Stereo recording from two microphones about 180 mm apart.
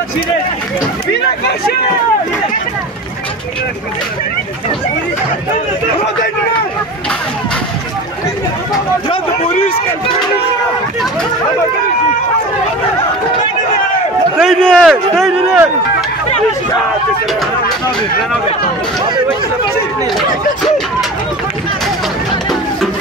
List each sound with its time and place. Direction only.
14.4 s a man's voice: 5° left (ahead or behind)
20.2 s speech: centre (ahead or behind)